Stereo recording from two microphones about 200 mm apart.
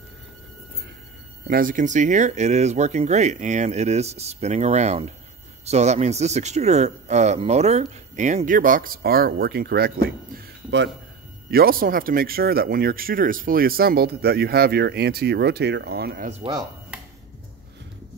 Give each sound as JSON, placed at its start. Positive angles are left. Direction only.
{"t": 1.5, "sound": "a man's voice", "side_deg": -45}